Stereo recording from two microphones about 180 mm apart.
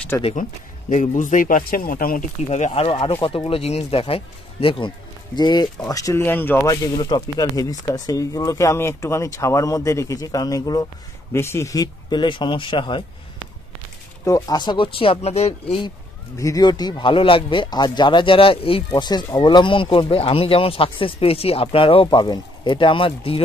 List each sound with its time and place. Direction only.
0.4 s speech: 45° left (ahead or behind); by 13.0 s 25° left (ahead or behind)
14.2 s speech: 20° left (ahead or behind)
16.3 s speech: 20° left (ahead or behind)